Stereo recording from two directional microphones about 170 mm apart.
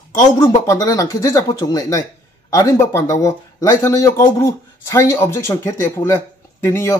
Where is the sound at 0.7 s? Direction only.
20° left (ahead or behind).